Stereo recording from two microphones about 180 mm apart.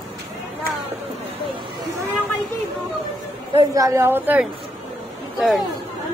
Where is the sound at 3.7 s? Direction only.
15° right (ahead or behind).